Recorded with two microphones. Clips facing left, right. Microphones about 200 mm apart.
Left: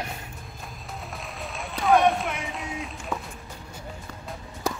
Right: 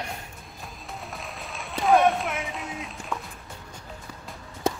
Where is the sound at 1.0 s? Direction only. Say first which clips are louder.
Left 3 dB; centre (ahead or behind).